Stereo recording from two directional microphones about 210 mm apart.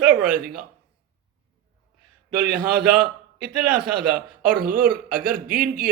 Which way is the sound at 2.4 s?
45° right (ahead or behind).